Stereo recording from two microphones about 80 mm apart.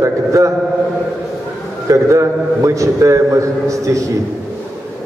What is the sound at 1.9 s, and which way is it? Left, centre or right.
A man's voice, right.